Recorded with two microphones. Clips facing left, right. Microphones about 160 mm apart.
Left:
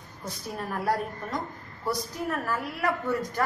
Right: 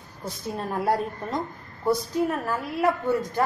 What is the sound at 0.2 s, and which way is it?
A woman's voice, 25° right (ahead or behind).